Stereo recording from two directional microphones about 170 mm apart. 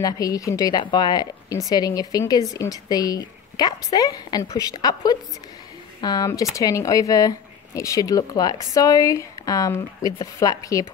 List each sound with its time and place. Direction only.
0.0 s speech: 20° left (ahead or behind)